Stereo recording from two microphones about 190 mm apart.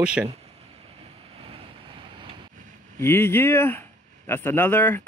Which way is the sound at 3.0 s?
10° left (ahead or behind).